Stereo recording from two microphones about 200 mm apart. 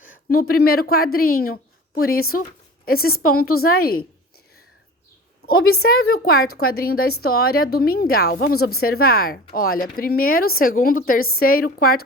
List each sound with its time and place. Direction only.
0.3 s a woman's voice: 50° left (ahead or behind)
5.8 s a woman's voice: 50° left (ahead or behind)